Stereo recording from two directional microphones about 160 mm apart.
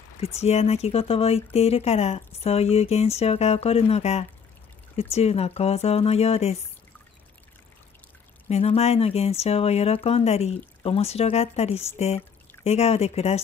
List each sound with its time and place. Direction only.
0.2 s speech: 40° left (ahead or behind)
8.5 s speech: 40° left (ahead or behind)